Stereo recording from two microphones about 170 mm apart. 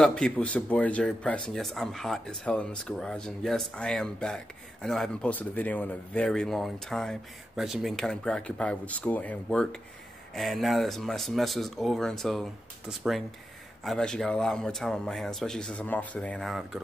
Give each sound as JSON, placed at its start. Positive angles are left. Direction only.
{"t": 0.0, "sound": "speech", "side_deg": 5}